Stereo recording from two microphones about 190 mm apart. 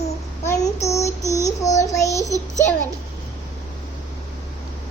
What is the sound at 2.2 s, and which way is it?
Child singing, 15° right (ahead or behind).